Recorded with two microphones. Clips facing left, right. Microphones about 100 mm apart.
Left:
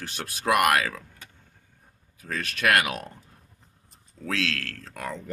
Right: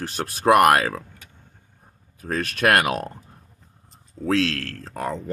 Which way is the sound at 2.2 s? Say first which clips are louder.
Right 6 dB; 45° right (ahead or behind).